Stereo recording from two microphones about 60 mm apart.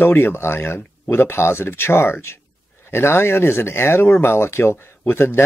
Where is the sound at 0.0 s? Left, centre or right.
Left.